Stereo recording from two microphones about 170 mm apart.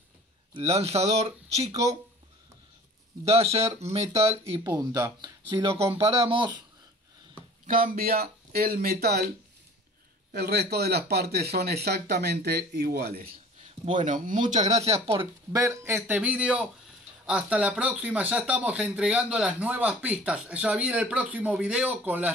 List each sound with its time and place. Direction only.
0.6 s speech: 35° right (ahead or behind)
3.3 s speech: 35° right (ahead or behind)
4.6 s speech: 20° right (ahead or behind)
5.9 s speech: 35° right (ahead or behind)
7.6 s speech: 55° right (ahead or behind)
10.4 s speech: 70° right (ahead or behind)
13.6 s speech: 45° right (ahead or behind)
15.5 s speech: 15° right (ahead or behind)